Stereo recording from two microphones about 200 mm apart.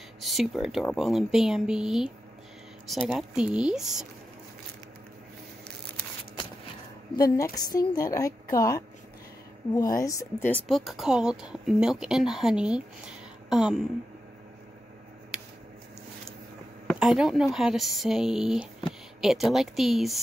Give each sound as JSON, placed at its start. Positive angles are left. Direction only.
{"t": 0.2, "sound": "speech", "side_deg": 0}
{"t": 3.2, "sound": "speech", "side_deg": -5}
{"t": 7.2, "sound": "a woman's voice", "side_deg": 15}
{"t": 17.0, "sound": "speech", "side_deg": 0}